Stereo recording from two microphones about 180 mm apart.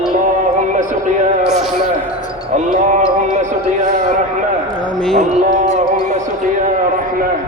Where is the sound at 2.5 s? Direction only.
45° right (ahead or behind).